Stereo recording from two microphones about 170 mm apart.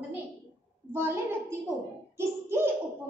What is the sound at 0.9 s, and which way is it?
A woman's voice, 15° right (ahead or behind).